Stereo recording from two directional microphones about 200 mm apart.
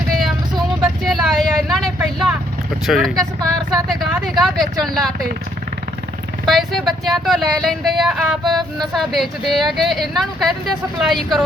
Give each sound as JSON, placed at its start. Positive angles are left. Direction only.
{"t": 0.8, "sound": "vehicle", "side_deg": 0}
{"t": 2.8, "sound": "speech", "side_deg": 0}
{"t": 6.4, "sound": "speech", "side_deg": 0}